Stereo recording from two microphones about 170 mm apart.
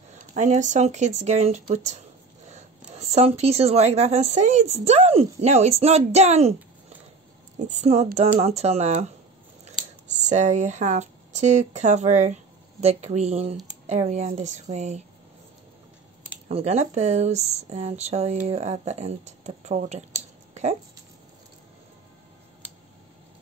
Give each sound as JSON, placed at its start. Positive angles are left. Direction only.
{"t": 0.1, "sound": "a woman's voice", "side_deg": -45}
{"t": 7.5, "sound": "a woman's voice", "side_deg": -45}
{"t": 16.4, "sound": "a woman's voice", "side_deg": -40}